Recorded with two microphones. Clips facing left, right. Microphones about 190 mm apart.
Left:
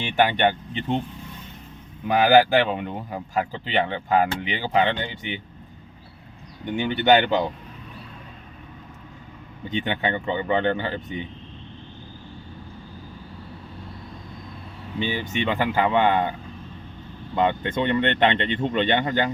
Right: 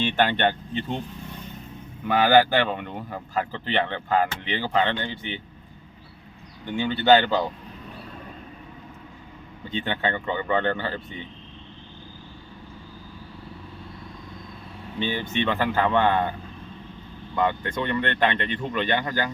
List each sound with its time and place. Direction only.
0.0 s speech: 15° left (ahead or behind)
2.0 s speech: 15° left (ahead or behind)
6.7 s speech: 20° left (ahead or behind)
9.6 s speech: 15° left (ahead or behind)
14.9 s speech: 10° left (ahead or behind)
17.3 s speech: 20° left (ahead or behind)